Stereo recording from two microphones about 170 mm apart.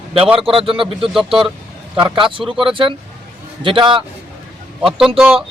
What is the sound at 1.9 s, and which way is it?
A man's voice, 30° right (ahead or behind).